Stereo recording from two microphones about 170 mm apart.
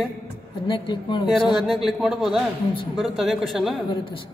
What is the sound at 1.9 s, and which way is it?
Music, centre (ahead or behind).